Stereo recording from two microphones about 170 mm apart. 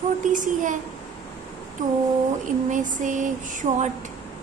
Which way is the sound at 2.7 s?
50° right (ahead or behind).